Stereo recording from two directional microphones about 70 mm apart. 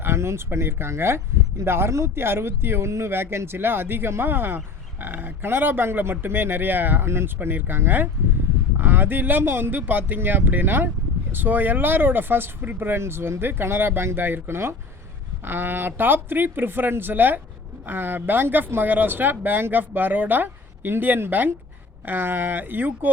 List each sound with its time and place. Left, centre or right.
0.0 s speech: right